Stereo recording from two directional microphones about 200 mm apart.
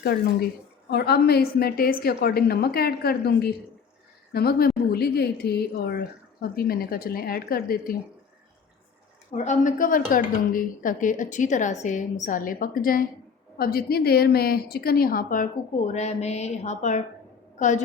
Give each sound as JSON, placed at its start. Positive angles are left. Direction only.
{"t": 0.0, "sound": "a woman's voice", "side_deg": 50}
{"t": 9.3, "sound": "a woman's voice", "side_deg": 35}
{"t": 15.9, "sound": "a woman's voice", "side_deg": 35}